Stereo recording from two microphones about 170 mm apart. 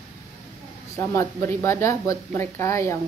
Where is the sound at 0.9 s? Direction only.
15° left (ahead or behind).